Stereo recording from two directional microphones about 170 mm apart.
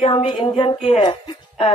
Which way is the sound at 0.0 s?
35° left (ahead or behind).